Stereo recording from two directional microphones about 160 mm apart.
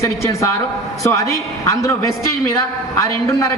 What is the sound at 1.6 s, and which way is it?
A man's voice, 20° left (ahead or behind).